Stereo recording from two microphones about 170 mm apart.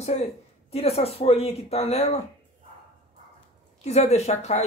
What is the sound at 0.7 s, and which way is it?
Speech, 35° left (ahead or behind).